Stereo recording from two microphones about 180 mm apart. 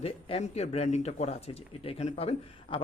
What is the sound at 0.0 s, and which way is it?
A woman's voice, 35° left (ahead or behind).